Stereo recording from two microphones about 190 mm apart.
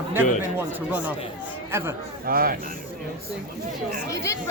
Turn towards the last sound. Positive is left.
turn(degrees=15)  # may be behind; listen again after turning